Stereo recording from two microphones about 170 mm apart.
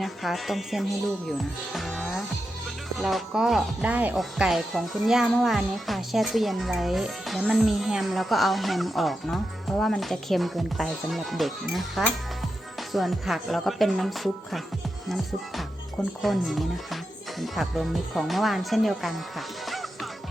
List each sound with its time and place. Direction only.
0.0 s speech: centre (ahead or behind)
1.7 s music: centre (ahead or behind)
3.0 s speech: centre (ahead or behind)
16.2 s speech: centre (ahead or behind)